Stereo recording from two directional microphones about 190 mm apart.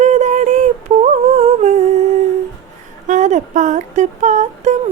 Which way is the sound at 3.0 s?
40° right (ahead or behind).